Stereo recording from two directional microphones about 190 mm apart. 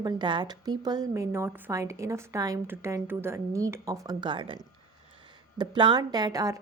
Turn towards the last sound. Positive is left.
turn(degrees=-20)  # may be behind; listen again after turning